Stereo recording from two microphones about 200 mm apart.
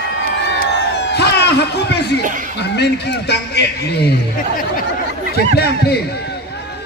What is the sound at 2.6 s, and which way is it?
A man's voice, 55° left (ahead or behind).